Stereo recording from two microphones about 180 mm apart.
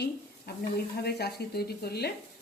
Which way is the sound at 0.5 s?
60° left (ahead or behind).